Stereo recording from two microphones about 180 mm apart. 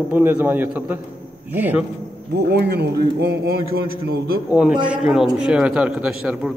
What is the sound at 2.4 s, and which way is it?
Speech, 65° right (ahead or behind).